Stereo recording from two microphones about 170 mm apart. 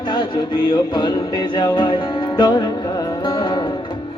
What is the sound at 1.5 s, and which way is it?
Music, 25° left (ahead or behind).